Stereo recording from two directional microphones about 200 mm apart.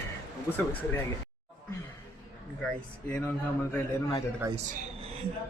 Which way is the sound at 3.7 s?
20° left (ahead or behind).